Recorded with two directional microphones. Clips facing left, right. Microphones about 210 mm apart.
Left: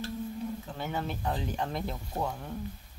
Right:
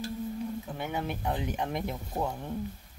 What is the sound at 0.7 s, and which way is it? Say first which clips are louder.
Speech: even; 15° right (ahead or behind).